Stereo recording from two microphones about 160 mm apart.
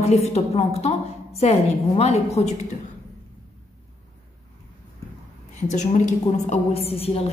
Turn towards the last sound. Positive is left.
turn(degrees=40)  # may be behind; listen again after turning